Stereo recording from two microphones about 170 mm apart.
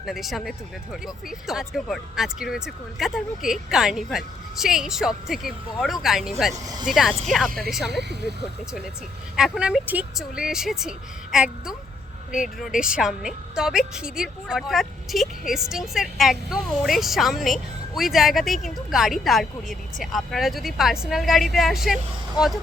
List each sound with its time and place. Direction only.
0.0 s a woman's voice: centre (ahead or behind)
8.1 s speech: 80° right
9.3 s a woman's voice: 5° right (ahead or behind)